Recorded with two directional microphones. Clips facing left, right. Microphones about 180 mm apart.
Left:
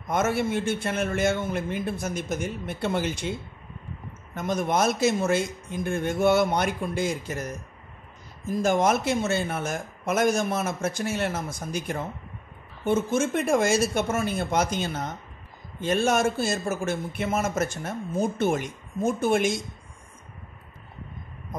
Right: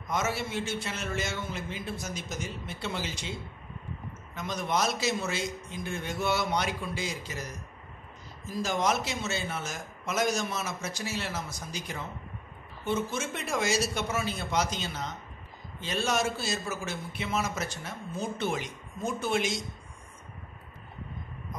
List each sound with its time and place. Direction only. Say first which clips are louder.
0.1 s a man's voice: left 7 dB; 55° left (ahead or behind)